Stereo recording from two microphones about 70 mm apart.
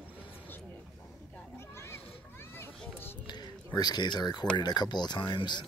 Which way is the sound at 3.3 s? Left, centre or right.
Left.